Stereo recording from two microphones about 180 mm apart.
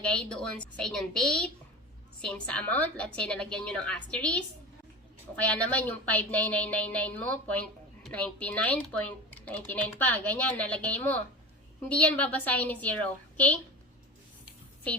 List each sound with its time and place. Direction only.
0.0 s a woman's voice: 5° left (ahead or behind)